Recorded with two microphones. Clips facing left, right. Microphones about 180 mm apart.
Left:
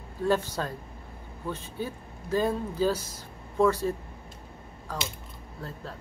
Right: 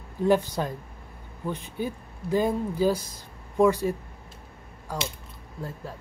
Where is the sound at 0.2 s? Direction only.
15° right (ahead or behind).